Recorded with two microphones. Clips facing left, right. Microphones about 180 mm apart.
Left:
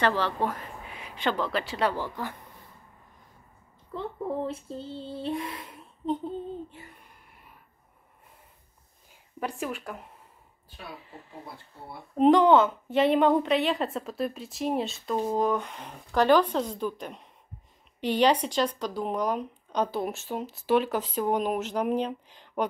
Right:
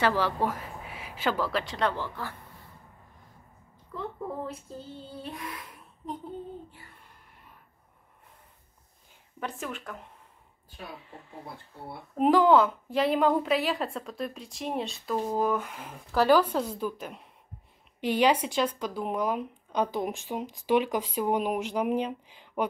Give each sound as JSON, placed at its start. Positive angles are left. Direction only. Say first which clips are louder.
{"t": 0.0, "sound": "speech", "louder": "even", "side_deg": -10}
{"t": 3.9, "sound": "child singing", "louder": "left 4 dB", "side_deg": 25}
{"t": 6.7, "sound": "a sound", "louder": "left 5 dB", "side_deg": 20}
{"t": 9.4, "sound": "a woman's voice", "louder": "left 3 dB", "side_deg": 10}